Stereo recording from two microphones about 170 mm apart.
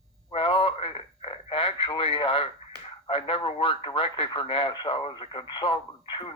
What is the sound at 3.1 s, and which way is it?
Speech, 35° left (ahead or behind).